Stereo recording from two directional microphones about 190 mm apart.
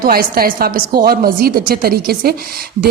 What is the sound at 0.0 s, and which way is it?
Speech, 50° right (ahead or behind).